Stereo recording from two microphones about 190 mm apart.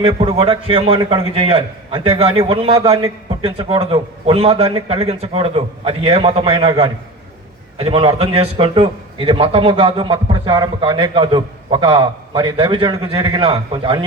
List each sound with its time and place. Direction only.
0.0 s a man's voice: 25° right (ahead or behind)